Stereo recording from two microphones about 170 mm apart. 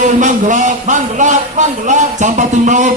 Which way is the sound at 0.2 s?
50° right (ahead or behind).